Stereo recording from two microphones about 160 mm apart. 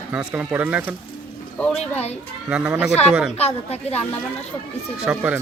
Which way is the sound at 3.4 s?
40° left (ahead or behind).